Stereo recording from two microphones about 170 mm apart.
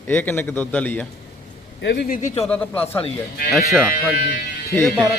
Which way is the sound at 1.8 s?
85° left.